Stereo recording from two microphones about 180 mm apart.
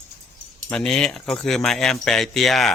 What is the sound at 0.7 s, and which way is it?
Speech, 5° left (ahead or behind).